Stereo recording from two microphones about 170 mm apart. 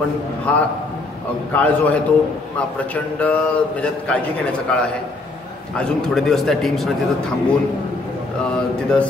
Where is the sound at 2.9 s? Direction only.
5° left (ahead or behind).